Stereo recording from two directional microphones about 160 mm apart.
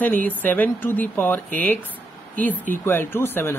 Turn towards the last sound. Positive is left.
turn(degrees=15)  # may be behind; listen again after turning